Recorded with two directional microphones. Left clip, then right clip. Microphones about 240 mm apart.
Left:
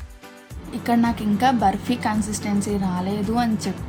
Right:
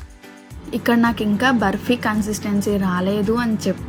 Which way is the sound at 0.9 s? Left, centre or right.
Centre.